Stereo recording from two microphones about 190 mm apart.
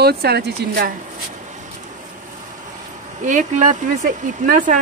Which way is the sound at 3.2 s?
40° right (ahead or behind).